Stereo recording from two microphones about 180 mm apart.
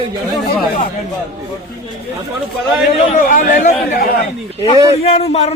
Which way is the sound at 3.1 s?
45° left (ahead or behind).